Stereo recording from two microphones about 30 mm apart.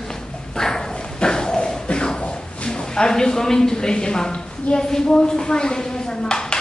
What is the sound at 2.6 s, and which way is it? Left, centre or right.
A woman's voice, left.